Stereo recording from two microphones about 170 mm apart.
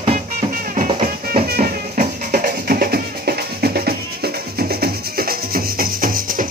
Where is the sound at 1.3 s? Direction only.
55° right (ahead or behind).